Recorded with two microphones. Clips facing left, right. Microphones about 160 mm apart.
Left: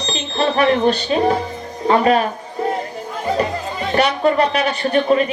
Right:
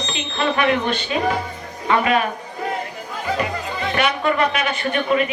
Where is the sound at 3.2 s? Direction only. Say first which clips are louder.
Left 4 dB; 35° left (ahead or behind).